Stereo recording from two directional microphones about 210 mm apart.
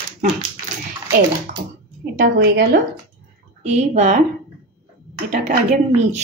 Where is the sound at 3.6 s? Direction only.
35° right (ahead or behind).